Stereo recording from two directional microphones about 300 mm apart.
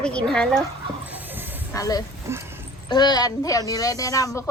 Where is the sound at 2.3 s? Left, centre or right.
Centre.